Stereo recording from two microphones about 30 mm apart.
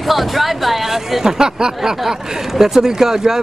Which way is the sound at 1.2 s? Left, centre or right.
Right.